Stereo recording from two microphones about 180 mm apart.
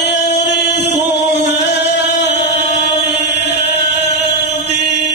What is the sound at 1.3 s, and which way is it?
Singing, 70° left (ahead or behind).